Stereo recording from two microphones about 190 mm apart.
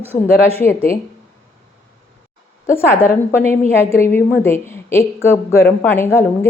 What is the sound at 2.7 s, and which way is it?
A woman's voice, 15° left (ahead or behind).